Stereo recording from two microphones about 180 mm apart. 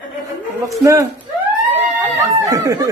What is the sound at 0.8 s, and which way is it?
Speech, 15° right (ahead or behind).